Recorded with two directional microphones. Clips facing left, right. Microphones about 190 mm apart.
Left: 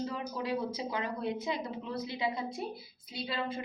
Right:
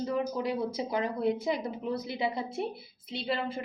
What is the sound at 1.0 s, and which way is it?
A woman's voice, 25° right (ahead or behind).